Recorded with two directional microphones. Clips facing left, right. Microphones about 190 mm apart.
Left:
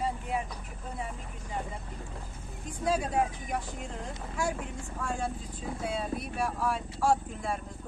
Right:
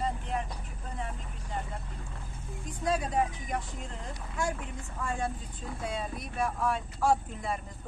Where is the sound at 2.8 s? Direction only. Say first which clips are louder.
Left 1 dB; centre (ahead or behind).